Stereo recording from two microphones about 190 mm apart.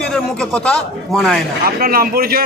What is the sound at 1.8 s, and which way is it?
Speech, 50° right (ahead or behind).